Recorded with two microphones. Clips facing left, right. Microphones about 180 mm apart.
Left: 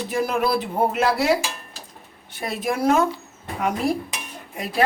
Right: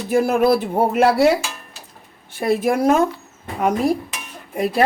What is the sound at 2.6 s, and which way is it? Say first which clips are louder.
Speech: right 2 dB; 45° right (ahead or behind).